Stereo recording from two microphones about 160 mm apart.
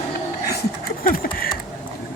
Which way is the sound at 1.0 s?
65° left (ahead or behind).